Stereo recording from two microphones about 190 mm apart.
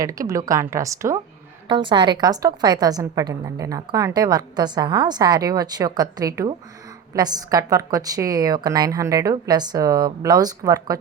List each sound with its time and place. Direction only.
0.0 s a woman's voice: 20° right (ahead or behind)